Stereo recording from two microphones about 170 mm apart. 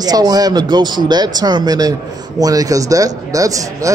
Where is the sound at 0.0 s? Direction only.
20° right (ahead or behind).